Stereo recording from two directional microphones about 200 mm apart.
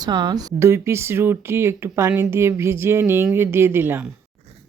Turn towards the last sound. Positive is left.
turn(degrees=-10)  # may be behind; listen again after turning